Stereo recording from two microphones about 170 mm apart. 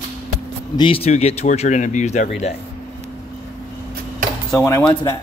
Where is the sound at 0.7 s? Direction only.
30° left (ahead or behind).